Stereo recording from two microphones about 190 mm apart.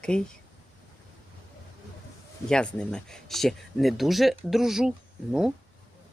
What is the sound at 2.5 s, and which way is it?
Speech, 5° left (ahead or behind).